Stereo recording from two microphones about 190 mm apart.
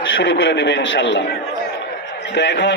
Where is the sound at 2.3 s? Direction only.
65° left (ahead or behind).